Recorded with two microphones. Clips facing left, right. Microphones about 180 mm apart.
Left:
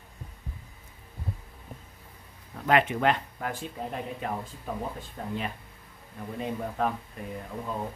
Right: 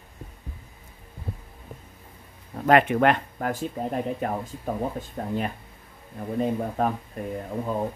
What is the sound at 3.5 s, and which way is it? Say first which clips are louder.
Speech: right 9 dB; 40° right (ahead or behind).